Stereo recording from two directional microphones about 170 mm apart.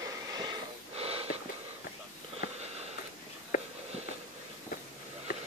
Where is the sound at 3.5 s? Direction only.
55° left (ahead or behind).